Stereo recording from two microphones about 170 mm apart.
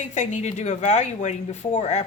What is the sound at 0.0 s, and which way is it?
Speech, 45° left (ahead or behind).